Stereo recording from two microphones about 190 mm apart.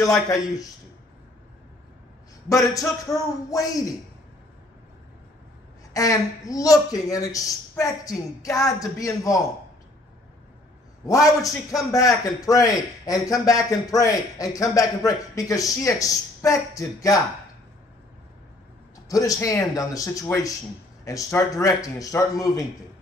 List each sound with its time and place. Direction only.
0.0 s a man's voice: 15° left (ahead or behind)
2.5 s a man's voice: 15° left (ahead or behind)
5.9 s a man's voice: 20° left (ahead or behind)
11.1 s a man's voice: 15° left (ahead or behind)
19.0 s a man's voice: 20° left (ahead or behind)